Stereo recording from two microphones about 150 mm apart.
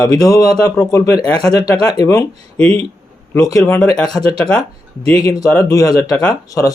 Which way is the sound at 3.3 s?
20° left (ahead or behind).